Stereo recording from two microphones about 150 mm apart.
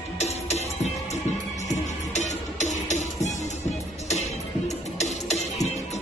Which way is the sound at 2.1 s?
50° left (ahead or behind).